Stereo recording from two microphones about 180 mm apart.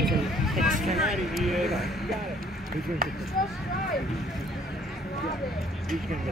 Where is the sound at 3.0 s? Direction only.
55° right (ahead or behind).